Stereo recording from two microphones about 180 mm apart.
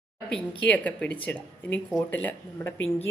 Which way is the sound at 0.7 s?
10° left (ahead or behind).